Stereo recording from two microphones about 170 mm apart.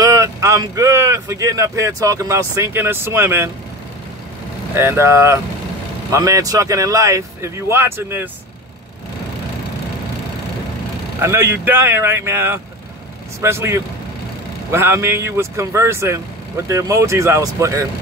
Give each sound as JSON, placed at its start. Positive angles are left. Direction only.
{"t": 0.0, "sound": "speech", "side_deg": -20}
{"t": 4.7, "sound": "speech", "side_deg": -15}
{"t": 11.1, "sound": "speech", "side_deg": -15}